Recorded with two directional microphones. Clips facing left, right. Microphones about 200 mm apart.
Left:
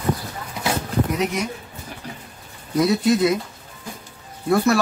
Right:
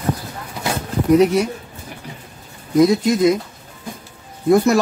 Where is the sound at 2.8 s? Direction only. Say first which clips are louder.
Right 4 dB; 15° right (ahead or behind).